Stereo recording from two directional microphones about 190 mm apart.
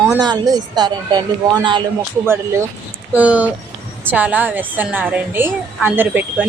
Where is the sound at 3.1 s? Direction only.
5° right (ahead or behind).